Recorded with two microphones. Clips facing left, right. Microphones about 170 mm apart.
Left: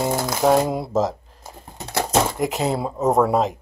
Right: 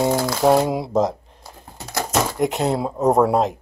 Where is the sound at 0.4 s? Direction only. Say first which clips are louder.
Even; 5° right (ahead or behind).